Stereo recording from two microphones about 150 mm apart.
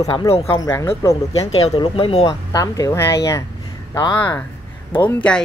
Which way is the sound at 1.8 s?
35° left (ahead or behind).